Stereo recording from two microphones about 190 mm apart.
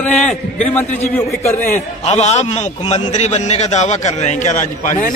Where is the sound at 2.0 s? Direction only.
35° left (ahead or behind).